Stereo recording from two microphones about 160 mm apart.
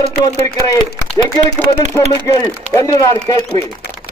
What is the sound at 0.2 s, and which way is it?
Speech, 20° left (ahead or behind).